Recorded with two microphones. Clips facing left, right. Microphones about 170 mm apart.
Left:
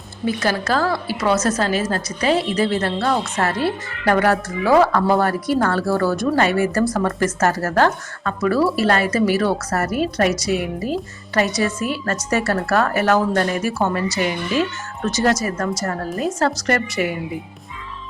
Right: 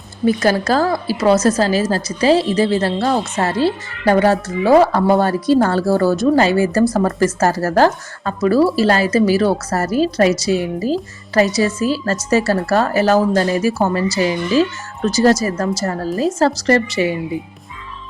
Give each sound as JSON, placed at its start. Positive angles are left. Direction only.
{"t": 0.3, "sound": "a woman's voice", "side_deg": -40}